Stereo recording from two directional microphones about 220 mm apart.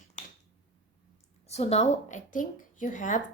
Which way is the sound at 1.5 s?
30° left (ahead or behind).